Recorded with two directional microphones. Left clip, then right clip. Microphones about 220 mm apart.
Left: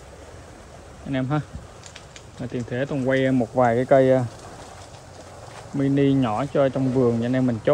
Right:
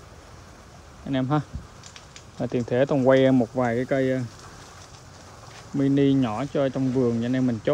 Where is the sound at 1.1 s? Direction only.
10° right (ahead or behind).